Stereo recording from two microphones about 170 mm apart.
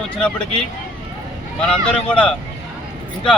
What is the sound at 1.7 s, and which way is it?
Speech, 5° left (ahead or behind).